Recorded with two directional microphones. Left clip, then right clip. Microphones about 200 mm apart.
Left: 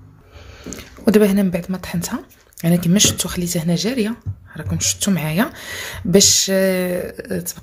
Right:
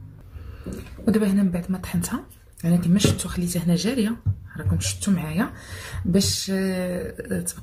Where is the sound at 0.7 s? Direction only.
45° left (ahead or behind).